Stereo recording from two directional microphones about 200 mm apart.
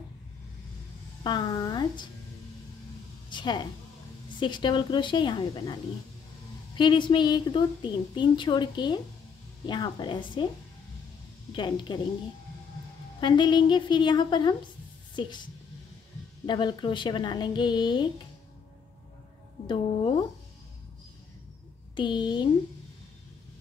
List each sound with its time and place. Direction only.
1.2 s speech: 20° left (ahead or behind)
3.3 s a woman's voice: 20° left (ahead or behind)
6.8 s a woman's voice: 25° left (ahead or behind)
11.5 s a woman's voice: 20° left (ahead or behind)
13.2 s a woman's voice: 25° left (ahead or behind)
16.4 s a woman's voice: 25° left (ahead or behind)
21.9 s a woman's voice: 20° left (ahead or behind)